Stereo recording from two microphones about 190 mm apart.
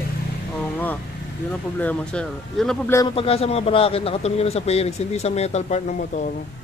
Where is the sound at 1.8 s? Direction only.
5° left (ahead or behind).